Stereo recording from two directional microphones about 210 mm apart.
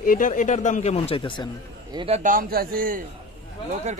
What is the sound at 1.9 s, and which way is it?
Speech, 25° right (ahead or behind).